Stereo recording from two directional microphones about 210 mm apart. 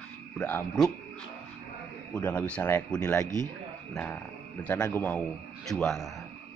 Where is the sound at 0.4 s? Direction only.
5° left (ahead or behind).